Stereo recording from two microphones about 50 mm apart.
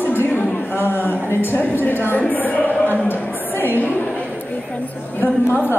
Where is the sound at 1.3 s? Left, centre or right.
Left.